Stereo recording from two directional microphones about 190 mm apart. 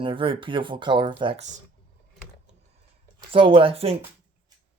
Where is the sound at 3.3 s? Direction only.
30° right (ahead or behind).